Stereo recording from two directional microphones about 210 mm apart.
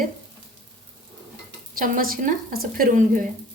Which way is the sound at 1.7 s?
40° right (ahead or behind).